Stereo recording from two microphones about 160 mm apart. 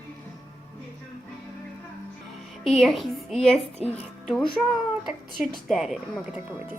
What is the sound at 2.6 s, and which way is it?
Speech, centre (ahead or behind).